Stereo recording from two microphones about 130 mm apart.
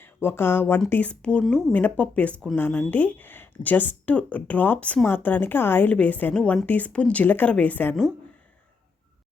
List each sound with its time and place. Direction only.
0.0 s speech: 15° left (ahead or behind)